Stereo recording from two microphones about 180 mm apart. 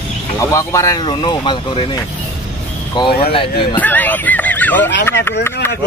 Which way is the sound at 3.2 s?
30° left (ahead or behind).